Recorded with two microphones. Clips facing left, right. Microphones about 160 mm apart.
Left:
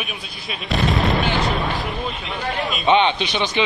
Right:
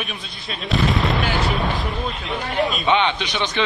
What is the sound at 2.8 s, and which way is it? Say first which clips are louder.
Speech: left 8 dB; 20° left (ahead or behind).